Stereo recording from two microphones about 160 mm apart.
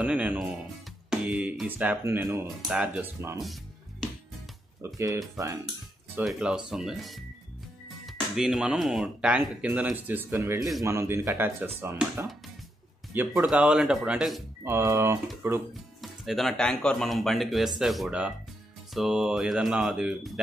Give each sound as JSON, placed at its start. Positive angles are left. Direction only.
{"t": 0.0, "sound": "speech", "side_deg": -10}
{"t": 1.2, "sound": "music", "side_deg": -5}
{"t": 2.4, "sound": "speech", "side_deg": -5}
{"t": 4.8, "sound": "speech", "side_deg": -20}
{"t": 6.2, "sound": "speech", "side_deg": -5}
{"t": 14.6, "sound": "speech", "side_deg": -15}
{"t": 16.0, "sound": "speech", "side_deg": 0}